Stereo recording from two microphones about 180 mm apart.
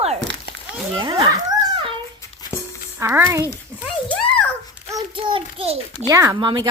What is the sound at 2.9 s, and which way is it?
Speech, 15° right (ahead or behind).